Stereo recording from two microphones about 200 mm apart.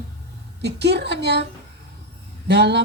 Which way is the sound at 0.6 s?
55° right (ahead or behind).